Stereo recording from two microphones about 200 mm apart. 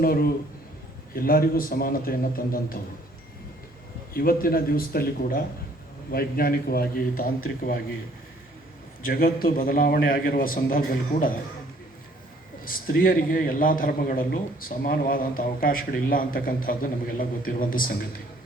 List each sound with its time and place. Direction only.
0.0 s a man's voice: 45° left (ahead or behind)
4.1 s a man's voice: 45° left (ahead or behind)
9.0 s a man's voice: 45° left (ahead or behind)
12.6 s a man's voice: 45° left (ahead or behind)